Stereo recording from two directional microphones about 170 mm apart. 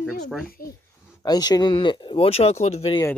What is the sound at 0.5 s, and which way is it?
Speech, 60° left (ahead or behind).